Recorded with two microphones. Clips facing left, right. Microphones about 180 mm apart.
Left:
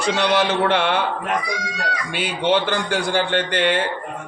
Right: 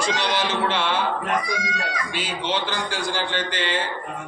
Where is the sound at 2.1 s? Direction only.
60° left (ahead or behind).